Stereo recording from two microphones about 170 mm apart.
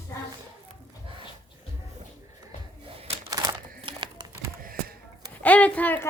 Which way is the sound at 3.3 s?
20° right (ahead or behind).